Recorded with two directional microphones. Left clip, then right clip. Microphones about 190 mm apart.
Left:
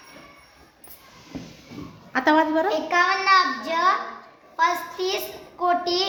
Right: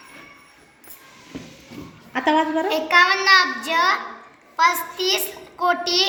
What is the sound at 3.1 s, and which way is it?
Speech, 35° left (ahead or behind).